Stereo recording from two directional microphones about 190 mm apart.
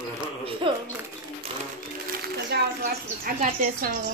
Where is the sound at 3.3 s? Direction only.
50° right (ahead or behind).